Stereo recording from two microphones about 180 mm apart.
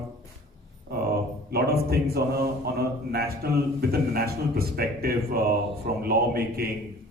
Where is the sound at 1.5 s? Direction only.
60° right (ahead or behind).